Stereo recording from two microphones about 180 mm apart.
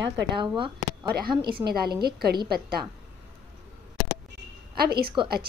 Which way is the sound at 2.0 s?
60° right (ahead or behind).